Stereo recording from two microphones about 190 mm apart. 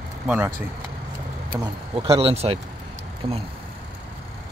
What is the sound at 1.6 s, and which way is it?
Speech, 20° right (ahead or behind).